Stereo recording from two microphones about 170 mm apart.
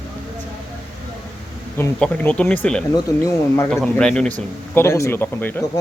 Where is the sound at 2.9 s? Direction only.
20° left (ahead or behind).